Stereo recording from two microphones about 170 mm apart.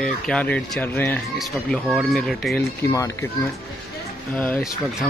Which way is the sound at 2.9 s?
20° left (ahead or behind).